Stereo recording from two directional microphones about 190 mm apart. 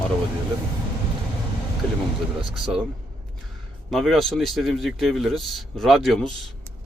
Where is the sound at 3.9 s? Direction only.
Centre (ahead or behind).